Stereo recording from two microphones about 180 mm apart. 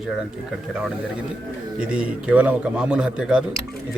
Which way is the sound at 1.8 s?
5° right (ahead or behind).